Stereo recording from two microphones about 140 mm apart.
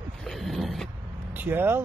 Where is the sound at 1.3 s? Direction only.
15° right (ahead or behind).